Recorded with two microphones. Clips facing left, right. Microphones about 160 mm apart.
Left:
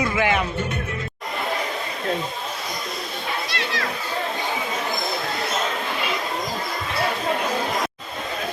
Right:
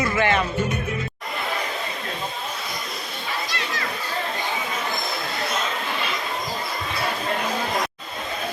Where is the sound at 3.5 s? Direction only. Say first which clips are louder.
Left 2 dB; 70° left (ahead or behind).